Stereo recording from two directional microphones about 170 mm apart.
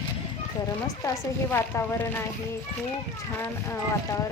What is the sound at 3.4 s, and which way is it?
Speech, 15° left (ahead or behind).